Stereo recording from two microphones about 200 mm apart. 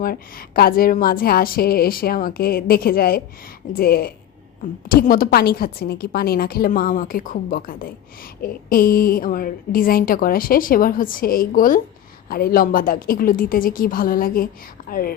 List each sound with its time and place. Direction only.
0.0 s a woman's voice: 50° left (ahead or behind)